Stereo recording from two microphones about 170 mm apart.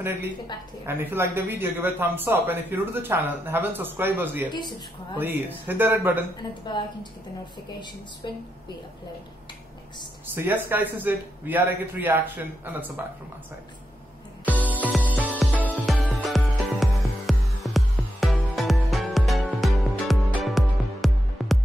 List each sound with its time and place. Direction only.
0.0 s speech: 10° right (ahead or behind)
6.6 s a woman's voice: 25° left (ahead or behind)
10.3 s speech: 10° right (ahead or behind)
15.2 s music: 10° right (ahead or behind)